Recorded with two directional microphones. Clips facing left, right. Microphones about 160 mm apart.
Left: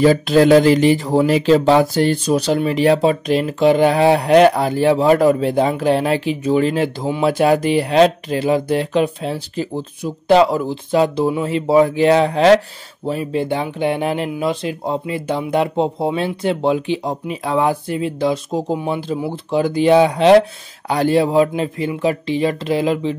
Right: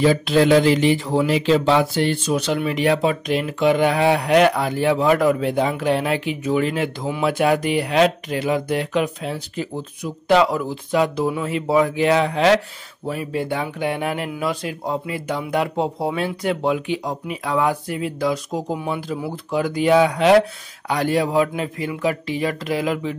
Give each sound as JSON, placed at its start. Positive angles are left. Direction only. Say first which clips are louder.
{"t": 0.0, "sound": "speech", "louder": "left 4 dB", "side_deg": 40}